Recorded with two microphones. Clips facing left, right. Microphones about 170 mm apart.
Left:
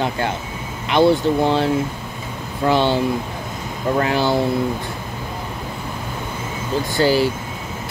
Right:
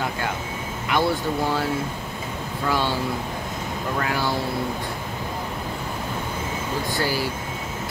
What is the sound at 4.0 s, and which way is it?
Speech, 25° left (ahead or behind).